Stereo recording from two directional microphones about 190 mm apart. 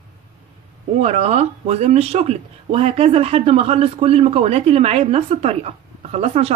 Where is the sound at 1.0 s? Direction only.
35° right (ahead or behind).